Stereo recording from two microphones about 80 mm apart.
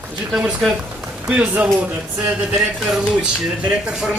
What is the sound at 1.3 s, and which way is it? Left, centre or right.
Speech, centre.